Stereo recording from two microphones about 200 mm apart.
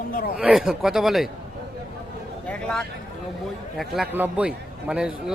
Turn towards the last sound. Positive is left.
turn(degrees=-5)  # may be behind; listen again after turning